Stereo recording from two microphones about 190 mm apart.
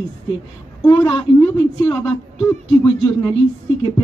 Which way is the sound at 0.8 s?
20° left (ahead or behind).